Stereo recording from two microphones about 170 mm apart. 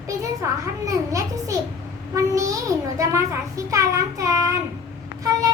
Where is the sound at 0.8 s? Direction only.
20° right (ahead or behind).